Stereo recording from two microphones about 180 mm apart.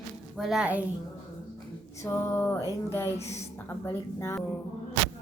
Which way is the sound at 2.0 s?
15° left (ahead or behind).